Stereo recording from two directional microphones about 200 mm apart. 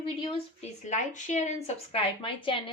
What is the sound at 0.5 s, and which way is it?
Speech, 35° left (ahead or behind).